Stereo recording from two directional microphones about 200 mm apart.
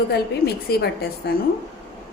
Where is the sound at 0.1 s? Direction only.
55° left (ahead or behind).